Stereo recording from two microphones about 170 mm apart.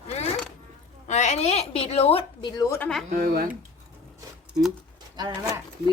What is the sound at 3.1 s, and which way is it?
Speech, 50° right (ahead or behind).